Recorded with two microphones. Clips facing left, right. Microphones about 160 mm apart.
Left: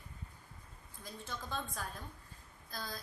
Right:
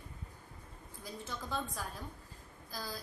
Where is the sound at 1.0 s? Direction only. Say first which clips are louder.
Right 2 dB; 5° right (ahead or behind).